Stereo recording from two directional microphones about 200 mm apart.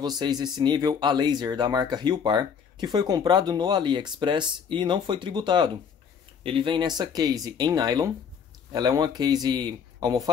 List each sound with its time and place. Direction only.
0.0 s speech: 20° right (ahead or behind)